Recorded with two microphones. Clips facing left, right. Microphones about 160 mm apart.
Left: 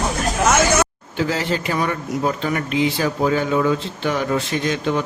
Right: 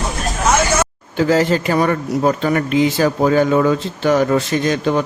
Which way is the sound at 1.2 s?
45° right (ahead or behind).